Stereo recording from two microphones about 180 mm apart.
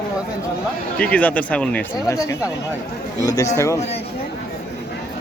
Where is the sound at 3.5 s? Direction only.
15° left (ahead or behind).